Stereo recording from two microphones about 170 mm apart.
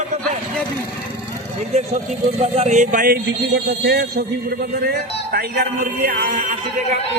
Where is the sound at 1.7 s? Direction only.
40° right (ahead or behind).